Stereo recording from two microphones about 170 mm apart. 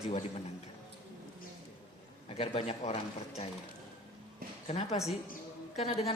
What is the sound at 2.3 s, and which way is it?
A woman's voice, 35° left (ahead or behind).